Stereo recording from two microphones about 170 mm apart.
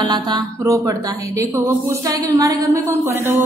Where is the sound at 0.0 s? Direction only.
25° right (ahead or behind).